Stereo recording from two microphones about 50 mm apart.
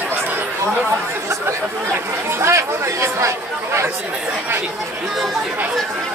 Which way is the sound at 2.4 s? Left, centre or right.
Right.